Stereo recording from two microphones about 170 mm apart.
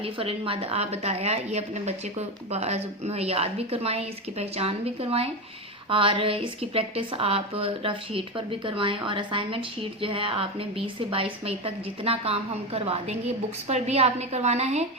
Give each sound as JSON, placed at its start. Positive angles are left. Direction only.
{"t": 0.0, "sound": "a woman's voice", "side_deg": -35}